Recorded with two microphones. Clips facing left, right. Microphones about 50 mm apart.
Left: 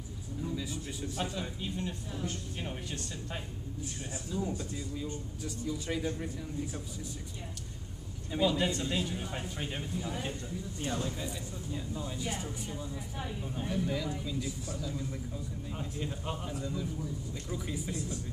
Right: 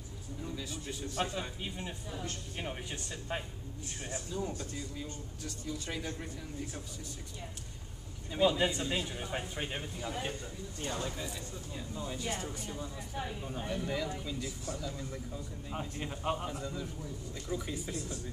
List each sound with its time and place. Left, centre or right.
1.2 s a man's voice: centre
4.3 s a man's voice: centre
8.4 s a man's voice: centre
12.2 s speech: centre
15.7 s a man's voice: centre
16.5 s speech: centre
17.5 s a man's voice: centre